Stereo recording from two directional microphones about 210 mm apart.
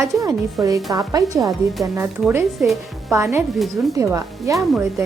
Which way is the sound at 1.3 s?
15° right (ahead or behind).